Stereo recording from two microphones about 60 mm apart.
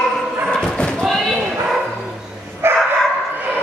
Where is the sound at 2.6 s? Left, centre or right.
Right.